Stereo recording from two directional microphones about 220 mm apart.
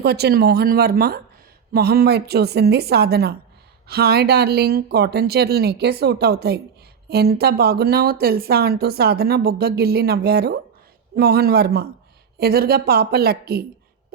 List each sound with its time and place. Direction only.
0.0 s speech: 45° right (ahead or behind)